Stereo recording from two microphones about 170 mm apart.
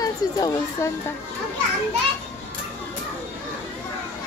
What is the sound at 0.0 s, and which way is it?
Speech, 20° left (ahead or behind).